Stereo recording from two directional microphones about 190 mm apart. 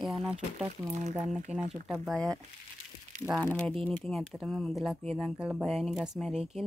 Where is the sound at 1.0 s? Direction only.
35° right (ahead or behind).